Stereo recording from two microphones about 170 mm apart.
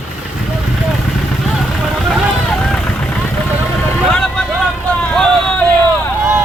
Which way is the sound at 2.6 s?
5° left (ahead or behind).